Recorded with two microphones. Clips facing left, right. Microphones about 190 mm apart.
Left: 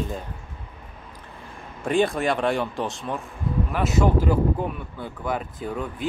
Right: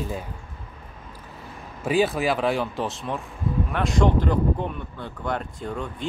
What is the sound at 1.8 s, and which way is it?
Speech, 5° right (ahead or behind).